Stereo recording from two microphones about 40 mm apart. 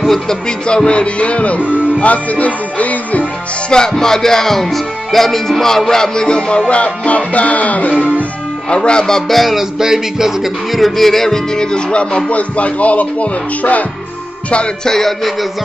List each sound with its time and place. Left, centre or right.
0.1 s speech: centre
0.7 s music: left
3.7 s speech: centre
6.7 s music: left
8.6 s speech: left
9.0 s speech: centre
9.4 s music: centre; by 12.2 s left
12.3 s music: left
14.9 s speech: centre